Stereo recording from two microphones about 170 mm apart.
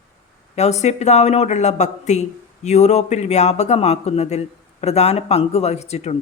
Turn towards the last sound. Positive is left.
turn(degrees=40)  # may be behind; listen again after turning